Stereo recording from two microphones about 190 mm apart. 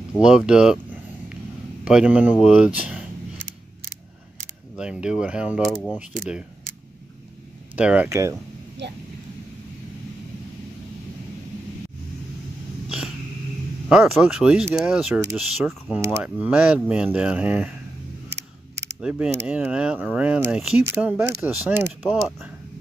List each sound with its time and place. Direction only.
0.2 s speech: 5° right (ahead or behind)
1.9 s speech: 5° right (ahead or behind)
4.7 s speech: 5° right (ahead or behind)
7.7 s speech: 5° right (ahead or behind)
8.8 s speech: 65° right (ahead or behind)
13.8 s speech: 5° right (ahead or behind)
18.9 s speech: 5° right (ahead or behind)